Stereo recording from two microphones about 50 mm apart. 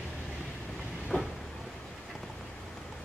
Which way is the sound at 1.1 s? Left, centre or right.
Left.